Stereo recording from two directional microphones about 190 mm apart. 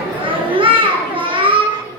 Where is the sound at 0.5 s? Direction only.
25° right (ahead or behind).